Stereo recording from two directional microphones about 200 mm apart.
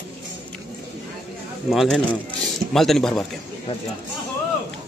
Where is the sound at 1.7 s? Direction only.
Centre (ahead or behind).